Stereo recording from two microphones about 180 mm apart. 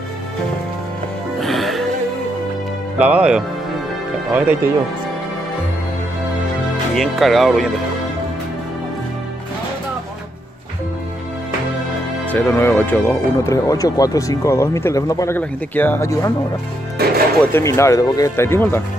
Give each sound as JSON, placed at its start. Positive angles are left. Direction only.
{"t": 1.4, "sound": "music", "side_deg": 0}
{"t": 3.0, "sound": "speech", "side_deg": -5}
{"t": 7.0, "sound": "speech", "side_deg": 0}
{"t": 12.3, "sound": "speech", "side_deg": 10}
{"t": 17.0, "sound": "speech", "side_deg": -60}
{"t": 17.4, "sound": "speech", "side_deg": 15}